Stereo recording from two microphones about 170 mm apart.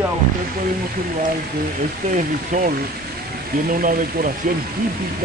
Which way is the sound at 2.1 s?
50° right (ahead or behind).